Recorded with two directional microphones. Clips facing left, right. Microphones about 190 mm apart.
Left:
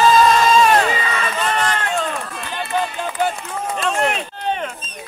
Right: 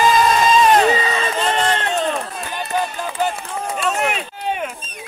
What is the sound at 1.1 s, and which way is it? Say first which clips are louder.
Run: right 2 dB; 30° right (ahead or behind).